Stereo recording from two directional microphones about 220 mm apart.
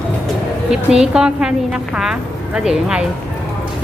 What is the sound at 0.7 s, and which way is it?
A woman's voice, 5° right (ahead or behind).